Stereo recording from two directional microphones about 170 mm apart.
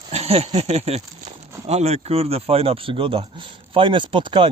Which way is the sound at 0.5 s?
40° right (ahead or behind).